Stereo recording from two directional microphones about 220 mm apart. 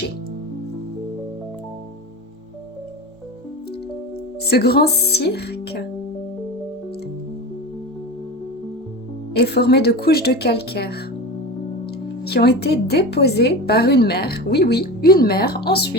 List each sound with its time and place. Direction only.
4.4 s a woman's voice: 45° left (ahead or behind)
9.3 s a woman's voice: 45° left (ahead or behind)
12.2 s a woman's voice: 45° left (ahead or behind)